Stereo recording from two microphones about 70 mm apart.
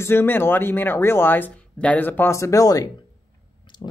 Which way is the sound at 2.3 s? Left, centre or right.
Left.